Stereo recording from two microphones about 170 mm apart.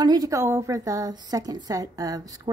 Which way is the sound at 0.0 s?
20° right (ahead or behind).